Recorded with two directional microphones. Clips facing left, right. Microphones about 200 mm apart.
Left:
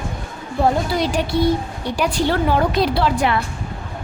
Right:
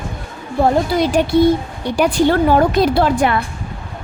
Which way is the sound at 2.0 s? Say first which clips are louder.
Right 6 dB; 50° right (ahead or behind).